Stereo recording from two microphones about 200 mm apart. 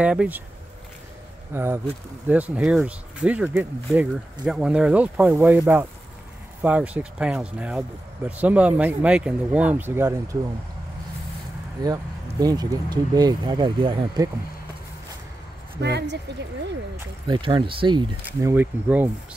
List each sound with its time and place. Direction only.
0.0 s speech: 5° right (ahead or behind)
1.5 s speech: 10° right (ahead or behind)
12.4 s speech: 20° right (ahead or behind)
15.8 s speech: 55° right (ahead or behind)
17.3 s speech: 25° right (ahead or behind)
18.5 s speech: 10° right (ahead or behind)